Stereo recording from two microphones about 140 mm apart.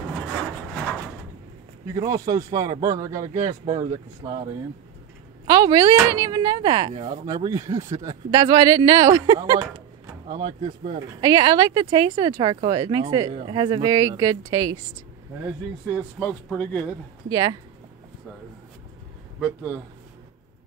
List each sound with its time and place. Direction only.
2.0 s speech: 25° right (ahead or behind)
3.3 s speech: 65° right (ahead or behind)
4.2 s speech: 25° right (ahead or behind)
5.5 s speech: 30° right (ahead or behind)
6.9 s speech: 45° right (ahead or behind)
7.2 s speech: 25° right (ahead or behind); by 11.0 s 45° right (ahead or behind)
11.0 s speech: 30° right (ahead or behind)
13.3 s speech: 45° right (ahead or behind)
13.6 s speech: 30° right (ahead or behind)
15.4 s speech: 10° right (ahead or behind)
16.2 s speech: 10° left (ahead or behind)
17.3 s speech: 25° right (ahead or behind)
19.4 s speech: 10° right (ahead or behind)